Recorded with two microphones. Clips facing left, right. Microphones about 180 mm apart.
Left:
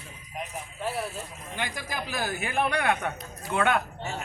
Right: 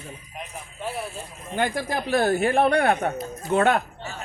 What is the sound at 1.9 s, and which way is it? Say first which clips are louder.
Speech: right 10 dB; 60° right (ahead or behind).